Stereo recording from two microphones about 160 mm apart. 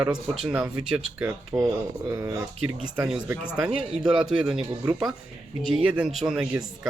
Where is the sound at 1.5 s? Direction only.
20° right (ahead or behind).